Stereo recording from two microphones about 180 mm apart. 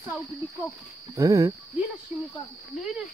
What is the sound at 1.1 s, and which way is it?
Speech, 15° right (ahead or behind).